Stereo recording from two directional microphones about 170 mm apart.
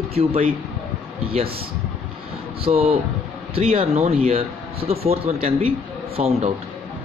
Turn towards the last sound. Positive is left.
turn(degrees=-35)  # may be behind; listen again after turning